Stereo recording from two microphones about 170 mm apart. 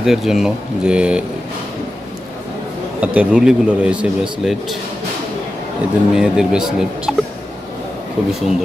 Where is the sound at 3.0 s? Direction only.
10° right (ahead or behind).